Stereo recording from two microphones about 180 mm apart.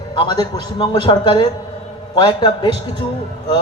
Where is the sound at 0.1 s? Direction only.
25° left (ahead or behind).